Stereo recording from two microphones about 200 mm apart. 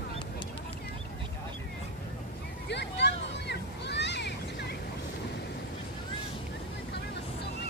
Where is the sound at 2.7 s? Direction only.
60° left (ahead or behind).